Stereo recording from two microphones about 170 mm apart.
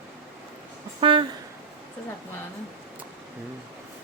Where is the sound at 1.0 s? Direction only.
30° right (ahead or behind).